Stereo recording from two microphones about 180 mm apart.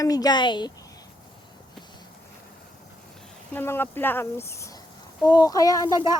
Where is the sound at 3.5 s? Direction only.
10° left (ahead or behind).